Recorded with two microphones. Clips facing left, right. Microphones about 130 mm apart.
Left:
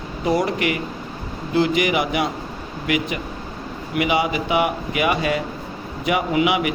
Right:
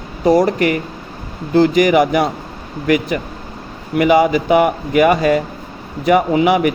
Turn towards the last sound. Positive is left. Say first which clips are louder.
# right 6 dB
turn(degrees=-45)  # may be behind; listen again after turning